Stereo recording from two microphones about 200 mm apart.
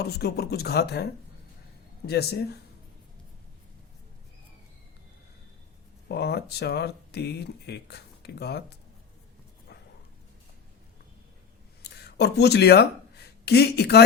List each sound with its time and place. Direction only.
0.0 s speech: 55° left (ahead or behind)
6.1 s speech: 55° left (ahead or behind)
11.8 s speech: 55° left (ahead or behind)